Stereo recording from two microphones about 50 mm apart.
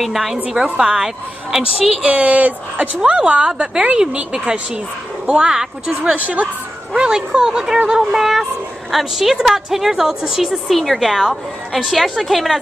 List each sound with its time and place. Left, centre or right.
0.0 s a woman's voice: centre
2.0 s speech: right
3.0 s a woman's voice: centre
5.3 s a woman's voice: centre
6.0 s speech: right
7.0 s a woman's voice: centre